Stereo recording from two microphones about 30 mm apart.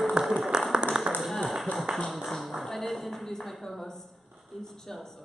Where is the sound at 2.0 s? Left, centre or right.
Centre.